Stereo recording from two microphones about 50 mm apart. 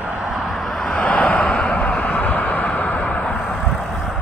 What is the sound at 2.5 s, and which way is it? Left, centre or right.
Vehicle, left.